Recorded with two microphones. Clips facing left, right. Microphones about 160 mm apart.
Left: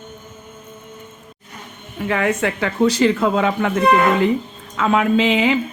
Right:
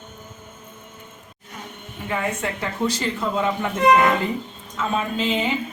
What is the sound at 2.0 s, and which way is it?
Speech, 80° left.